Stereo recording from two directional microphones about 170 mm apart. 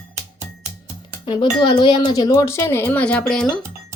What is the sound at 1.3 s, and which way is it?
Speech, 30° left (ahead or behind).